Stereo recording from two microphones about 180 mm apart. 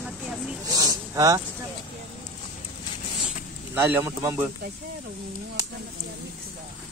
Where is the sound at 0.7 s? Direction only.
20° right (ahead or behind).